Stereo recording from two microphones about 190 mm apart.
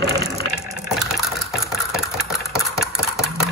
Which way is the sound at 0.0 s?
60° right (ahead or behind).